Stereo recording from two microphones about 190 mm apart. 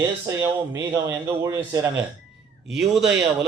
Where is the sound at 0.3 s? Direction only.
20° right (ahead or behind).